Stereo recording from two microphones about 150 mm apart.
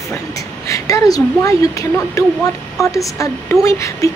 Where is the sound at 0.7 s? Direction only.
20° left (ahead or behind).